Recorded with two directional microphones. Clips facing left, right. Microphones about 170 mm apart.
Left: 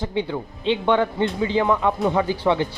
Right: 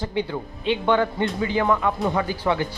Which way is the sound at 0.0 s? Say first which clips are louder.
Left 1 dB; 20° left (ahead or behind).